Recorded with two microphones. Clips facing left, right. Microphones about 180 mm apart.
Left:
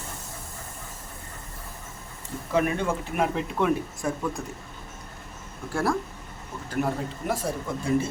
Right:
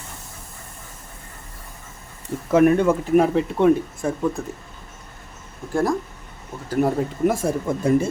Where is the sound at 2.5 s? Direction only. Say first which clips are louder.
Right 9 dB; 45° right (ahead or behind).